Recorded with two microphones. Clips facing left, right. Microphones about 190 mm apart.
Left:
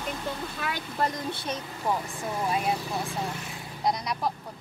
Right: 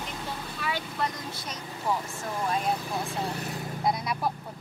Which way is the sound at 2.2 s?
10° left (ahead or behind).